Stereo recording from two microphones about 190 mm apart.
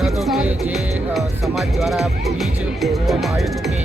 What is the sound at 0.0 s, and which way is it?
Music, centre (ahead or behind).